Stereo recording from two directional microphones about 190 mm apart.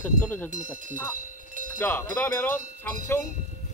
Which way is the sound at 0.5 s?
40° right (ahead or behind).